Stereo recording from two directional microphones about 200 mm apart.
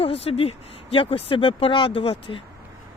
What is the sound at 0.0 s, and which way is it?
Speech, 30° left (ahead or behind).